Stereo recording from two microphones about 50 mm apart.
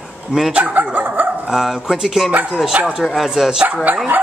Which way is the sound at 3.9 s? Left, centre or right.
Right.